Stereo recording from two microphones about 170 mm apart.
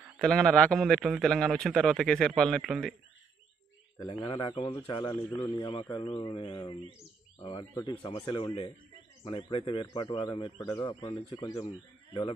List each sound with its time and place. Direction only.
0.2 s a man's voice: 5° left (ahead or behind)
4.1 s a man's voice: 30° left (ahead or behind)